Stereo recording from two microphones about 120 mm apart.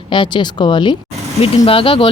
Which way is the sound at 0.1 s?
40° left (ahead or behind).